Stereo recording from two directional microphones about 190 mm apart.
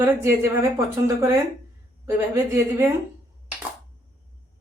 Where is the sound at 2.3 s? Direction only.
15° right (ahead or behind).